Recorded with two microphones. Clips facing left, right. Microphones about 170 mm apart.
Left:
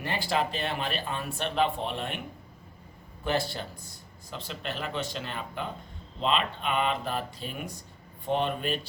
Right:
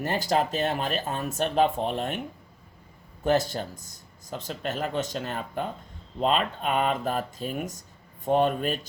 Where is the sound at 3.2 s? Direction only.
45° right (ahead or behind).